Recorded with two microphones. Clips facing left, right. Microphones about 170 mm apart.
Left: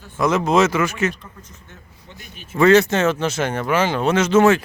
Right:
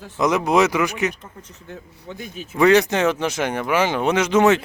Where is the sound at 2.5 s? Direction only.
15° right (ahead or behind).